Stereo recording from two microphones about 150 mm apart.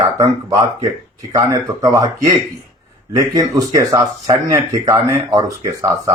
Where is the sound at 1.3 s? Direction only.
20° right (ahead or behind).